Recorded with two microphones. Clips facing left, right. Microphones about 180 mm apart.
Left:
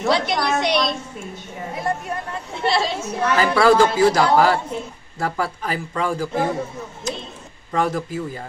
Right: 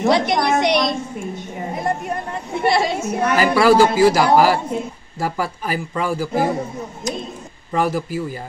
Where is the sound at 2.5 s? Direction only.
50° right (ahead or behind).